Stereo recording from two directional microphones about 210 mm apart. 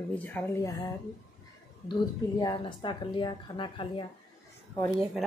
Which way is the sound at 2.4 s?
20° left (ahead or behind).